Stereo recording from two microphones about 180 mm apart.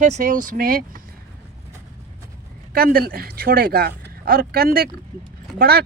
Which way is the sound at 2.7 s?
55° right (ahead or behind).